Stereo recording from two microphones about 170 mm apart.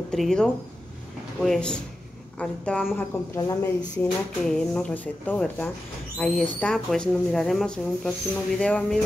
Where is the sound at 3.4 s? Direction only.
20° left (ahead or behind).